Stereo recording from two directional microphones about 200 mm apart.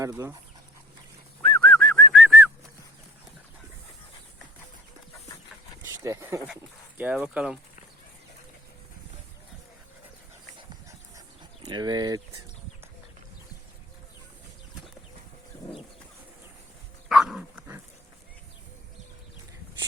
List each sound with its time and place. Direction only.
0.0 s speech: 15° right (ahead or behind)
1.4 s whistling: 5° left (ahead or behind)
2.1 s whistling: 10° right (ahead or behind)
5.8 s a sound: 15° right (ahead or behind)
6.5 s speech: 5° right (ahead or behind)
10.6 s dog: 20° right (ahead or behind)
11.6 s speech: 20° right (ahead or behind)
17.1 s dog: centre (ahead or behind)